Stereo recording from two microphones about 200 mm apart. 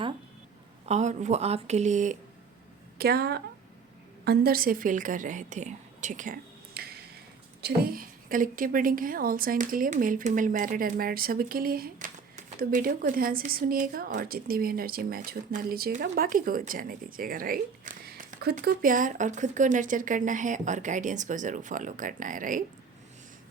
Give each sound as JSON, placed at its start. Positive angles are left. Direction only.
{"t": 0.9, "sound": "a woman's voice", "side_deg": -35}
{"t": 3.0, "sound": "a woman's voice", "side_deg": -50}
{"t": 6.8, "sound": "tick-tock", "side_deg": -50}
{"t": 7.6, "sound": "a woman's voice", "side_deg": -45}